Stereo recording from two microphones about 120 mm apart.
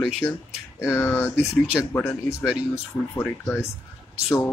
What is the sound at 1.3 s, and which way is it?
Speech, 10° right (ahead or behind).